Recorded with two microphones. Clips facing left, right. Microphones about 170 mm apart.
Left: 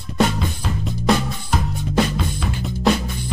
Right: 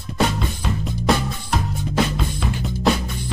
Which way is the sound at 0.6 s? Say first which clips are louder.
Even; centre (ahead or behind).